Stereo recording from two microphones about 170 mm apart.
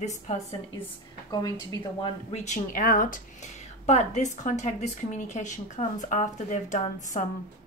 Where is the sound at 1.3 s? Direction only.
20° left (ahead or behind).